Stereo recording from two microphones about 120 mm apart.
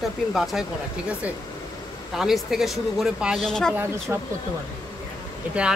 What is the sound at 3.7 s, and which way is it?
Speech, 20° right (ahead or behind).